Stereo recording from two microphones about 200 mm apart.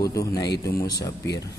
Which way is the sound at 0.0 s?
15° left (ahead or behind).